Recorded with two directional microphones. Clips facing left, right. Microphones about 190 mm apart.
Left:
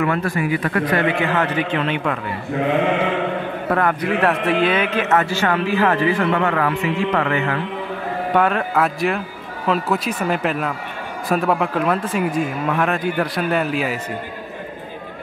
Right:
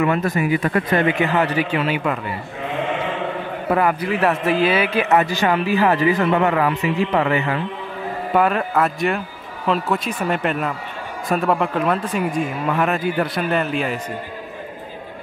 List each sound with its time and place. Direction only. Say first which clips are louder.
0.0 s a man's voice: right 1 dB; 20° right (ahead or behind)
3.7 s a man's voice: right 1 dB; 5° right (ahead or behind)
8.3 s speech: even; 5° right (ahead or behind)